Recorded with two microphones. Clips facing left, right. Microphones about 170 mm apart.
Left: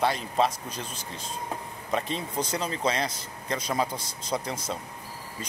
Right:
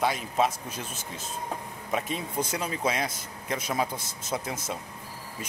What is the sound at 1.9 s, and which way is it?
Speech, 5° right (ahead or behind).